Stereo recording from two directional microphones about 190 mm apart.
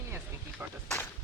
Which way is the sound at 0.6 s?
10° right (ahead or behind).